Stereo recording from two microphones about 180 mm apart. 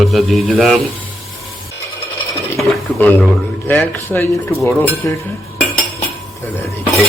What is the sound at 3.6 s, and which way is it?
Speech, 10° left (ahead or behind).